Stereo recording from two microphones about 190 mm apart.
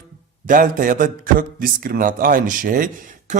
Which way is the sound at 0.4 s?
45° right (ahead or behind).